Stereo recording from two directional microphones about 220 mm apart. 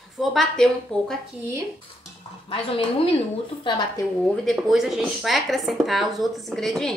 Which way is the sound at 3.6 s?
20° left (ahead or behind).